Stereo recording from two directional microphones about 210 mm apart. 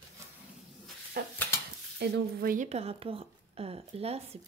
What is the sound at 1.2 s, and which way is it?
Dishes, 45° right (ahead or behind).